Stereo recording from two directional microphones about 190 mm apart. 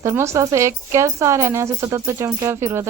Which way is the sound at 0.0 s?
15° right (ahead or behind).